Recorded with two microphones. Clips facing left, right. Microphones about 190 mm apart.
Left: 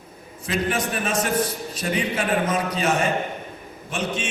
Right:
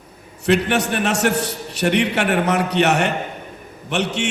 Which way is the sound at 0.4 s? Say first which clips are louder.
Right 7 dB; 70° right (ahead or behind).